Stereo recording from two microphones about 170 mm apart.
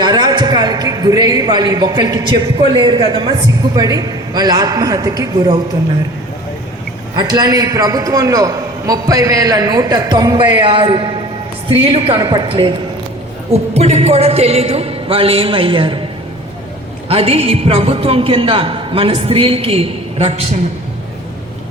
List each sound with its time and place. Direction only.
0.0 s a man's voice: 25° right (ahead or behind)
7.2 s a man's voice: 25° right (ahead or behind)
17.1 s a man's voice: 35° right (ahead or behind)